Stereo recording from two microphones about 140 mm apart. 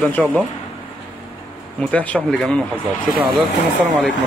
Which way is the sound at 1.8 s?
10° left (ahead or behind).